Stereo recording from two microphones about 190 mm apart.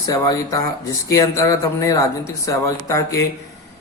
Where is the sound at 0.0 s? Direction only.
20° left (ahead or behind).